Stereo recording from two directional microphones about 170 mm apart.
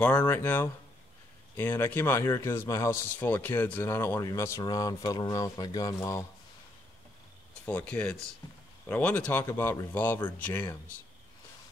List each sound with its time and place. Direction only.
0.0 s speech: 10° left (ahead or behind)
7.6 s speech: 10° left (ahead or behind)